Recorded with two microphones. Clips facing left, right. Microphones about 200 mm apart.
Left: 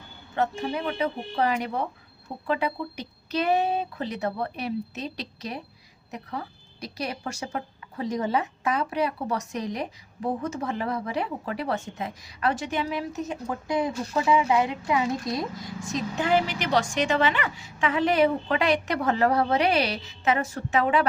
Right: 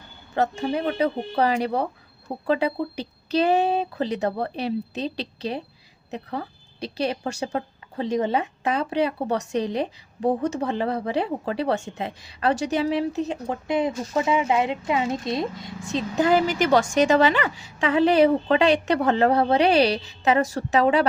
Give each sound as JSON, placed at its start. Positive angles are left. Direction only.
{"t": 0.3, "sound": "a woman's voice", "side_deg": -35}
{"t": 16.1, "sound": "a woman's voice", "side_deg": -40}